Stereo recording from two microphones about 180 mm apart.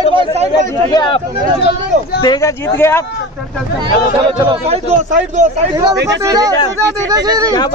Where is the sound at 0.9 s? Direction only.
25° left (ahead or behind).